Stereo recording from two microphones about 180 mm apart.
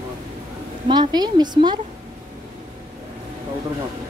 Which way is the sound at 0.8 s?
25° right (ahead or behind).